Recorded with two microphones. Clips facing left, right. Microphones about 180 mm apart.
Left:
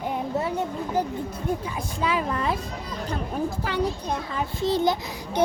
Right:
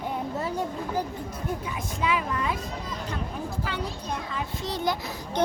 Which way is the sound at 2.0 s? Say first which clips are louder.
Left 2 dB; 35° left (ahead or behind).